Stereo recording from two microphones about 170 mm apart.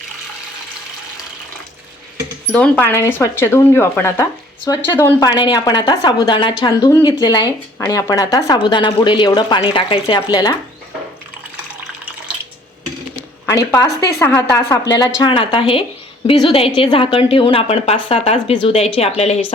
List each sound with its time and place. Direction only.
2.5 s speech: 5° left (ahead or behind)
5.3 s speech: 25° left (ahead or behind)
13.5 s speech: 20° left (ahead or behind)
15.2 s a woman's voice: 30° left (ahead or behind)